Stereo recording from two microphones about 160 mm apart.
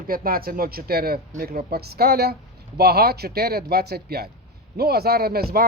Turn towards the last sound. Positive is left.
turn(degrees=-75)  # may be behind; listen again after turning